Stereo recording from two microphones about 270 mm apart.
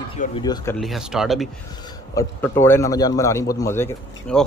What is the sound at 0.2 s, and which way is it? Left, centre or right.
Speech, centre.